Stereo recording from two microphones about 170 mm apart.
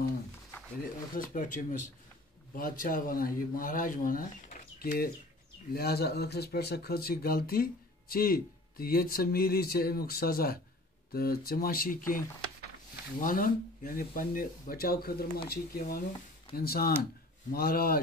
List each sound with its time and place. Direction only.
1.1 s speech: 50° left (ahead or behind)
4.7 s speech: 60° left (ahead or behind)
13.2 s speech: 55° left (ahead or behind)